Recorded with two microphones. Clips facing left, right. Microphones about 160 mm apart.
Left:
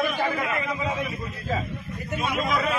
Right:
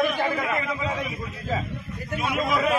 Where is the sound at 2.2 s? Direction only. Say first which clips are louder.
Right 1 dB; 10° right (ahead or behind).